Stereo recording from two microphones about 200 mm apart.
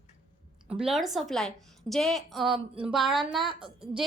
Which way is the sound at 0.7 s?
Centre (ahead or behind).